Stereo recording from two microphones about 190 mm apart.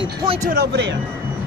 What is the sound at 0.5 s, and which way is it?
Speech, 60° right (ahead or behind).